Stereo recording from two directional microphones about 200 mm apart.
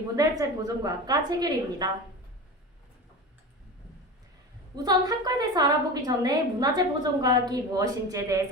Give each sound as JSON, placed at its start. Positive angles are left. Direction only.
{"t": 0.2, "sound": "a woman's voice", "side_deg": -15}
{"t": 4.7, "sound": "a woman's voice", "side_deg": -20}